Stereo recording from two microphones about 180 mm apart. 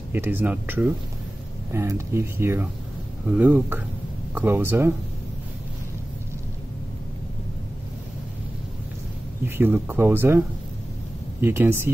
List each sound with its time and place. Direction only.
0.1 s speech: 10° right (ahead or behind)
9.4 s speech: 10° right (ahead or behind)
11.4 s speech: 10° right (ahead or behind)